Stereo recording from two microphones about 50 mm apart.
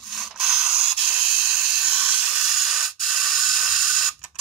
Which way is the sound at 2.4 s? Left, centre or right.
Centre.